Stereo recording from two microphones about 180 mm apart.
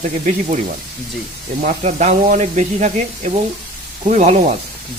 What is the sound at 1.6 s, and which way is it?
Speech, 40° right (ahead or behind).